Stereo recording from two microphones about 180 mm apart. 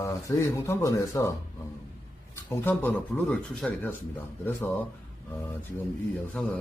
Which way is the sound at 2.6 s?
10° left (ahead or behind).